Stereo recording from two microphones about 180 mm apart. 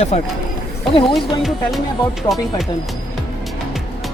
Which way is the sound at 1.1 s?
Centre (ahead or behind).